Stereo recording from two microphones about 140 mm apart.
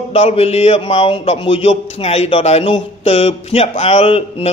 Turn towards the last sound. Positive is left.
turn(degrees=45)  # may be behind; listen again after turning